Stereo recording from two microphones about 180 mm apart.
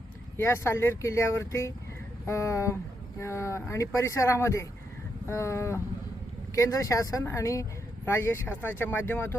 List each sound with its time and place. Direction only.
0.3 s a woman's voice: 15° left (ahead or behind)